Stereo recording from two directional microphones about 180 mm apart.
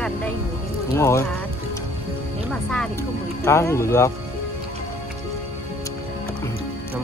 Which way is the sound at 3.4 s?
15° left (ahead or behind).